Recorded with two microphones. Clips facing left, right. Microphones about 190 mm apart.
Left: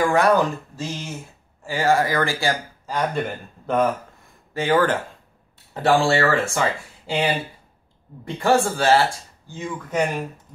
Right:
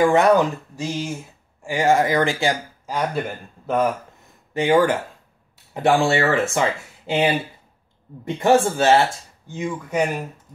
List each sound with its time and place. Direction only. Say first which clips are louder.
0.0 s speech: right 2 dB; 20° right (ahead or behind)
8.7 s speech: right 2 dB; 20° right (ahead or behind)